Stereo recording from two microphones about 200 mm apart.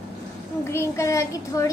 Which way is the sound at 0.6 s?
15° left (ahead or behind).